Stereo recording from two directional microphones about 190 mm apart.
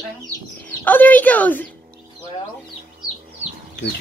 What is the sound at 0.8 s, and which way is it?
Speech, 10° left (ahead or behind).